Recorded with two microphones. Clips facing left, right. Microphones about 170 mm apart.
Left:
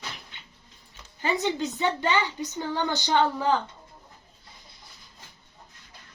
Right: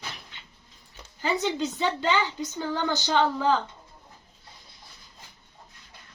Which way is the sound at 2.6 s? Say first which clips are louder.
Even; 15° left (ahead or behind).